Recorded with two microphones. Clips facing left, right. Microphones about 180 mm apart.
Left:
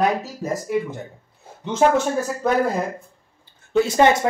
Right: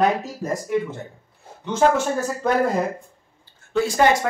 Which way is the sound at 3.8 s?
25° left (ahead or behind).